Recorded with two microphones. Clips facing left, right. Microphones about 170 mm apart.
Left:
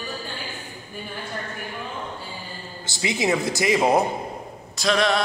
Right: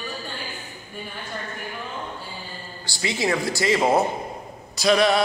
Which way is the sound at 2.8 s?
20° left (ahead or behind).